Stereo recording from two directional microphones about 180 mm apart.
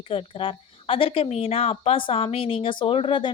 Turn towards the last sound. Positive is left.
turn(degrees=30)  # may be behind; listen again after turning